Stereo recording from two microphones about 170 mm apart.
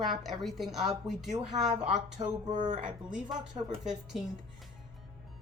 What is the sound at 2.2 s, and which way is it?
Speech, 30° right (ahead or behind).